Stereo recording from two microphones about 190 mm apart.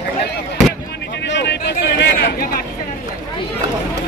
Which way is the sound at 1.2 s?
70° left (ahead or behind).